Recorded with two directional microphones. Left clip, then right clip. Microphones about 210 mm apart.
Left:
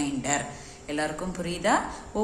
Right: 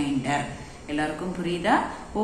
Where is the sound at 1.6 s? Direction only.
60° left (ahead or behind).